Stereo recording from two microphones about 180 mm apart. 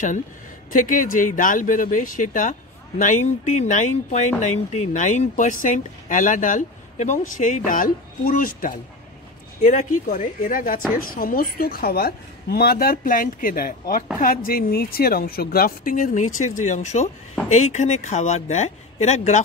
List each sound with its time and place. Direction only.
0.7 s speech: 45° left (ahead or behind)